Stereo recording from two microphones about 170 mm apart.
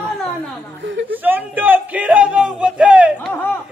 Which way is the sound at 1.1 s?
10° right (ahead or behind).